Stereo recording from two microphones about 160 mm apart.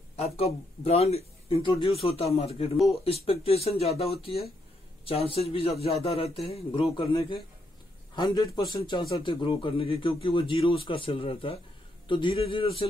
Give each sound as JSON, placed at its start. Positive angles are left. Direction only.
{"t": 0.1, "sound": "speech", "side_deg": 40}
{"t": 8.2, "sound": "speech", "side_deg": 30}